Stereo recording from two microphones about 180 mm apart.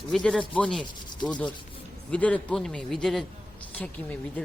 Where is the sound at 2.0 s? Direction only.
5° left (ahead or behind).